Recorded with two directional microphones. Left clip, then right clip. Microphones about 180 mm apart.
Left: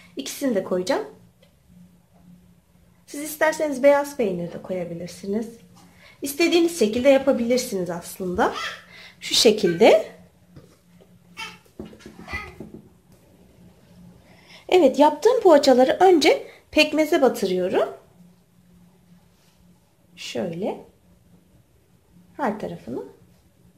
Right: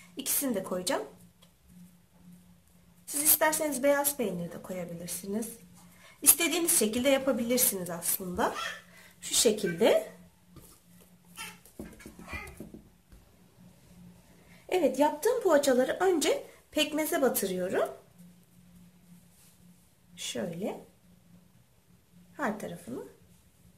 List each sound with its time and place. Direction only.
0.1 s a woman's voice: 20° left (ahead or behind)
3.3 s a woman's voice: 20° left (ahead or behind)
14.7 s a woman's voice: 25° left (ahead or behind)
20.2 s speech: 10° left (ahead or behind)